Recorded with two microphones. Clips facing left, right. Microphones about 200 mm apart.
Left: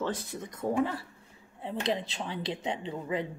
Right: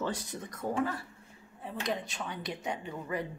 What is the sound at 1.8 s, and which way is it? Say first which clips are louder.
Speech: left 3 dB; 30° left (ahead or behind).